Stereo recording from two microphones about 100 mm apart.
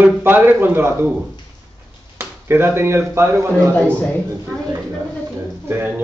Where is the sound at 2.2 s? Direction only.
20° right (ahead or behind).